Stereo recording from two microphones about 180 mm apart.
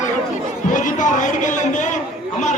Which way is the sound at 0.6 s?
45° left (ahead or behind).